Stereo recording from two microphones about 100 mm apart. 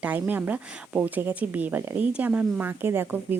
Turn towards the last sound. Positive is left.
turn(degrees=-20)  # may be behind; listen again after turning